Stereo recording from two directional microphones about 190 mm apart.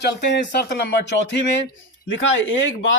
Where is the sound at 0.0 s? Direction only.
65° left (ahead or behind).